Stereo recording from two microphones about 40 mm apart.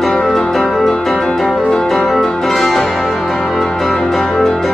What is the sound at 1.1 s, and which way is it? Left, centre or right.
Music, centre.